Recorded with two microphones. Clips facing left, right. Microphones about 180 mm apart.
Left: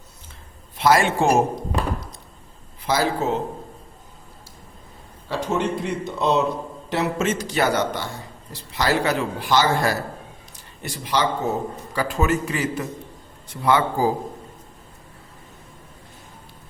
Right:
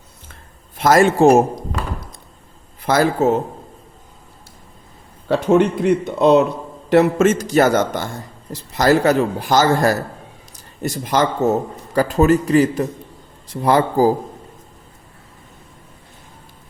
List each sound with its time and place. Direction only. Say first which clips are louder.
0.8 s a man's voice: right 6 dB; 45° right (ahead or behind)
2.8 s a man's voice: right 6 dB; 50° right (ahead or behind)
5.3 s a man's voice: right 9 dB; 60° right (ahead or behind); by 14.1 s 40° right (ahead or behind)